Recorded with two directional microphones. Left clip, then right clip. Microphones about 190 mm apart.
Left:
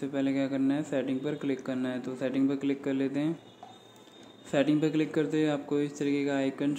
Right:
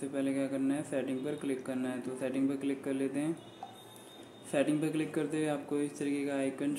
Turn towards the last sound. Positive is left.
turn(degrees=15)  # may be behind; listen again after turning